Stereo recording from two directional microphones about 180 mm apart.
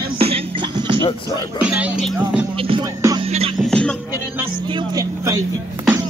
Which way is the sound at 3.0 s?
20° right (ahead or behind).